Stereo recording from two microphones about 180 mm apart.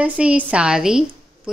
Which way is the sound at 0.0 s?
5° right (ahead or behind).